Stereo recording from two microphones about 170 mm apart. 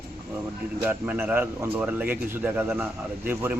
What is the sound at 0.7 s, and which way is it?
A man's voice, 10° right (ahead or behind).